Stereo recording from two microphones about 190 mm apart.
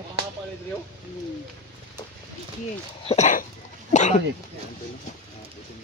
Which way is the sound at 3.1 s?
40° left (ahead or behind).